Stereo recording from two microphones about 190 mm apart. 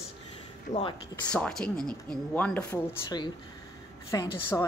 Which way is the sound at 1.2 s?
5° left (ahead or behind).